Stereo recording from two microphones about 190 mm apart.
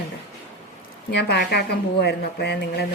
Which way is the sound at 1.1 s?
60° left (ahead or behind).